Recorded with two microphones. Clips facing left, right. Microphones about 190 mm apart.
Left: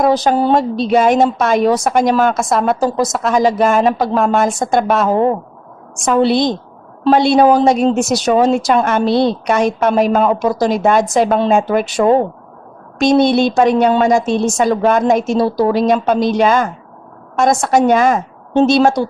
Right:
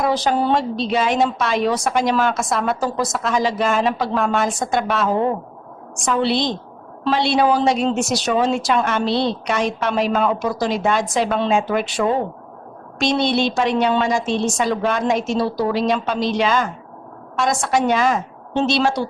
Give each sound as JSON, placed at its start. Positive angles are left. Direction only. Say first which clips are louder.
{"t": 0.0, "sound": "a woman's voice", "louder": "left 6 dB", "side_deg": 40}